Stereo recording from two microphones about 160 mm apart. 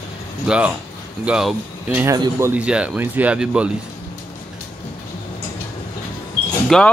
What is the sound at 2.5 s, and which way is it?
Speech, 5° right (ahead or behind).